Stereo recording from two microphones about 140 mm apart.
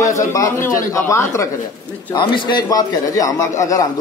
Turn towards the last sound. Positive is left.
turn(degrees=25)  # may be behind; listen again after turning